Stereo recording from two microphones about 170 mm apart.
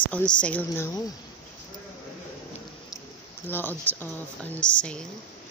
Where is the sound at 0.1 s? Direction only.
5° left (ahead or behind).